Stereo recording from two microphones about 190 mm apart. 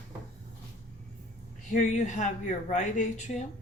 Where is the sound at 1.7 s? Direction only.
40° left (ahead or behind).